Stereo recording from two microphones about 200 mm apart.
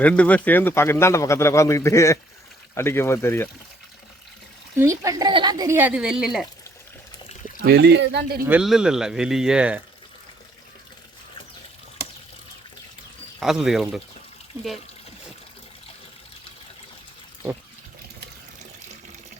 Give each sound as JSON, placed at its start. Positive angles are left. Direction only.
{"t": 0.0, "sound": "a man's voice", "side_deg": 5}
{"t": 4.8, "sound": "a woman's voice", "side_deg": -15}
{"t": 7.6, "sound": "speech", "side_deg": -55}
{"t": 8.4, "sound": "speech", "side_deg": -5}
{"t": 13.4, "sound": "speech", "side_deg": 0}